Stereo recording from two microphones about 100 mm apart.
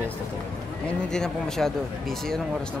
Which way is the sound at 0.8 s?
5° left (ahead or behind).